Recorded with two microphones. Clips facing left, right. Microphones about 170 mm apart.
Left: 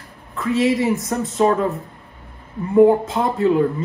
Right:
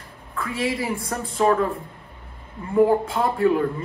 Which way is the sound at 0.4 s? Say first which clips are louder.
Left 8 dB; 25° left (ahead or behind).